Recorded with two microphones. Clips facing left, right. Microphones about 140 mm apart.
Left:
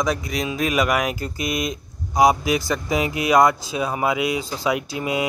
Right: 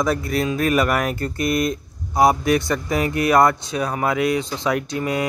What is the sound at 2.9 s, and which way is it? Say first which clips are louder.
Speech: right 2 dB; 20° left (ahead or behind).